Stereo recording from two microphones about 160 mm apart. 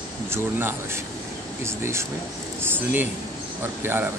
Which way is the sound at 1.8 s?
15° right (ahead or behind).